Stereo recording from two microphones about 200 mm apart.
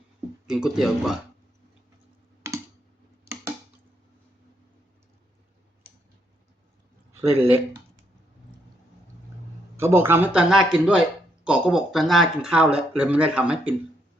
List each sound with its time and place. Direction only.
0.4 s speech: 5° right (ahead or behind)
7.3 s speech: 30° right (ahead or behind)
9.7 s speech: 10° right (ahead or behind)